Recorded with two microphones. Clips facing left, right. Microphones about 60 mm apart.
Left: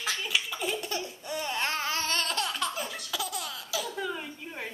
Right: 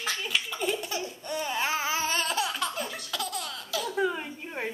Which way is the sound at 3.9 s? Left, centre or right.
Right.